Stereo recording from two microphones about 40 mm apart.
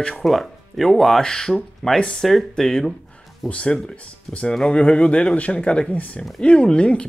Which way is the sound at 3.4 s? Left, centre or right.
Centre.